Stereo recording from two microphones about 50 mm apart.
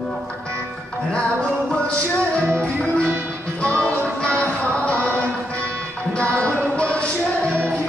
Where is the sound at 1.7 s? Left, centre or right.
Left.